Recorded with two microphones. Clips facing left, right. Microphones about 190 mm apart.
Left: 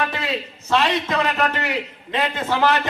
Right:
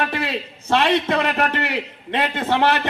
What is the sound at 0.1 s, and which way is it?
A man's voice, 60° right (ahead or behind).